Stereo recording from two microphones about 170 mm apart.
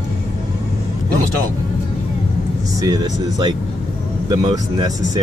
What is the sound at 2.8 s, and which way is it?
Speech, 25° right (ahead or behind).